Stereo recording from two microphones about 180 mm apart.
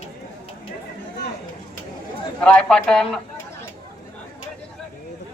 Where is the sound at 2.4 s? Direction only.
5° left (ahead or behind).